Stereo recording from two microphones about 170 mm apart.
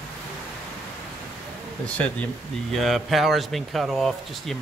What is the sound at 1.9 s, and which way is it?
Speech, 5° left (ahead or behind).